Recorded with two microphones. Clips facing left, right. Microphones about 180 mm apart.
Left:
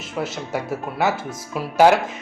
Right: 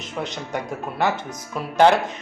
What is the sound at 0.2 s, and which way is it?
Speech, 5° left (ahead or behind).